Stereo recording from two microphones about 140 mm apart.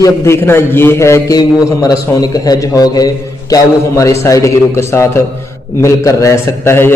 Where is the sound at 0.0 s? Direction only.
20° left (ahead or behind).